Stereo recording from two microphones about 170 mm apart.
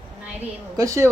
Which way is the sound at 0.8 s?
20° right (ahead or behind).